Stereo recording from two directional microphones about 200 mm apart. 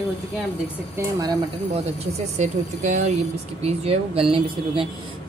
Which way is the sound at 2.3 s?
35° right (ahead or behind).